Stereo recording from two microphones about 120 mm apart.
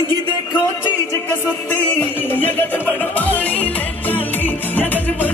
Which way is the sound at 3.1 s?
15° left (ahead or behind).